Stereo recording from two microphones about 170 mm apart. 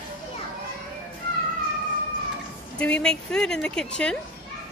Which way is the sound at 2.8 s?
5° left (ahead or behind).